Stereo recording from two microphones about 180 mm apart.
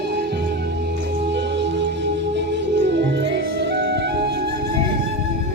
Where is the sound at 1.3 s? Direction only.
75° right (ahead or behind).